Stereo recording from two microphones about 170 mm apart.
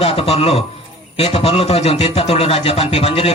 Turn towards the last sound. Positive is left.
turn(degrees=35)  # may be behind; listen again after turning